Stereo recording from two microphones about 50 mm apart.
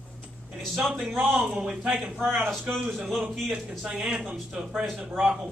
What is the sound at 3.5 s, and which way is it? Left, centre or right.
A man's voice, centre.